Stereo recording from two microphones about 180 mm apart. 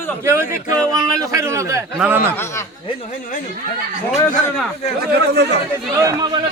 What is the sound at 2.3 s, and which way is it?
Speech, 15° left (ahead or behind).